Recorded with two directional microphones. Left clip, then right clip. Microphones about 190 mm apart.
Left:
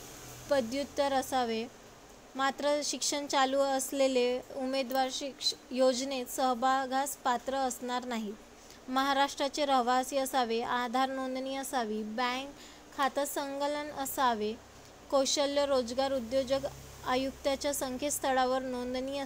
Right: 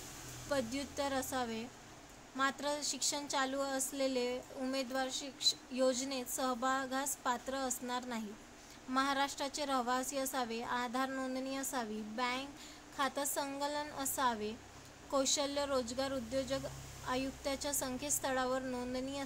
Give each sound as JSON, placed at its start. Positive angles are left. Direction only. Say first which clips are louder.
{"t": 0.5, "sound": "a woman's voice", "louder": "left 7 dB", "side_deg": 20}